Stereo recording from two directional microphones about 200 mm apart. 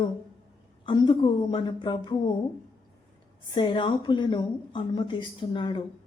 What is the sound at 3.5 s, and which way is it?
A woman's voice, 25° left (ahead or behind).